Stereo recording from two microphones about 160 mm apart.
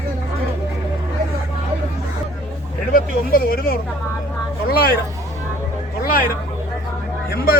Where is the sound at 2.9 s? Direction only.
65° left (ahead or behind).